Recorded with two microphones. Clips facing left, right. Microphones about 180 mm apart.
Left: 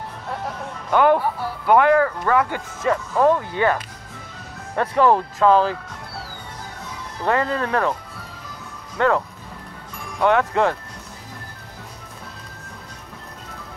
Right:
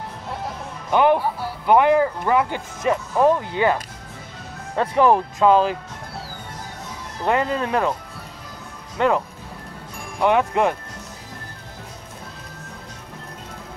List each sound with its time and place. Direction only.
0.8 s speech: 20° right (ahead or behind)
4.7 s speech: 20° right (ahead or behind)
7.2 s speech: 20° right (ahead or behind)
8.9 s speech: 15° right (ahead or behind)